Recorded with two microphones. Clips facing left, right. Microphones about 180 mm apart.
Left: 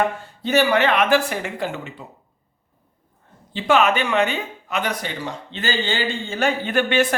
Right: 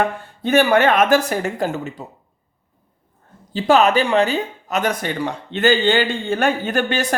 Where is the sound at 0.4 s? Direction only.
50° right (ahead or behind).